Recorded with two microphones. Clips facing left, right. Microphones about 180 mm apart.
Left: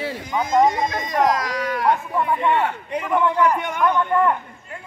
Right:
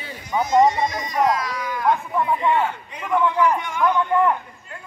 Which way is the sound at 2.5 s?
60° left (ahead or behind).